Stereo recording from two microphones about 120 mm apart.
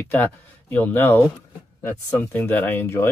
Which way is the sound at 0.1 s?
15° left (ahead or behind).